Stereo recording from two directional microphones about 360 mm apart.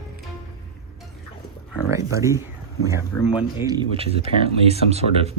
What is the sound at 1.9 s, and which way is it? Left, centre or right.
Speech, centre.